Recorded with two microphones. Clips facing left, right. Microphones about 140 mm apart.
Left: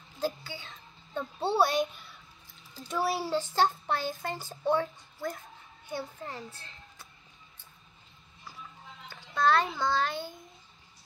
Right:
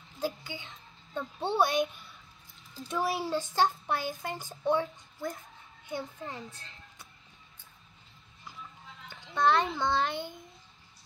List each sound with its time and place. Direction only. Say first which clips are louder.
0.2 s a child's voice: left 1 dB; 20° right (ahead or behind)
1.1 s speech: left 2 dB; 10° left (ahead or behind)
1.6 s a child's voice: even; 15° right (ahead or behind)
3.1 s a child's voice: left 1 dB; 15° right (ahead or behind)
9.1 s a sound: even; 20° right (ahead or behind)
9.8 s a child's voice: even; 20° right (ahead or behind)